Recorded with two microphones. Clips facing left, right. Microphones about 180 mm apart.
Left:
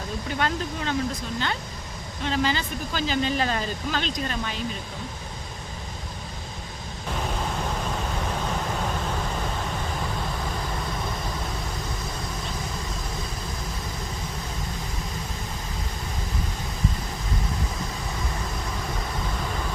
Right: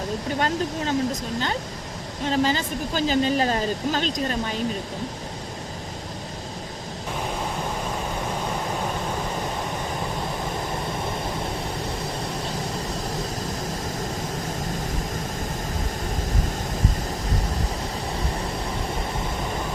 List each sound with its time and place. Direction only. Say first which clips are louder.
0.3 s speech: right 2 dB; 40° right (ahead or behind)